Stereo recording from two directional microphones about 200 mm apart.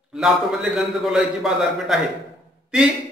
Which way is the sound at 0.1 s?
Centre (ahead or behind).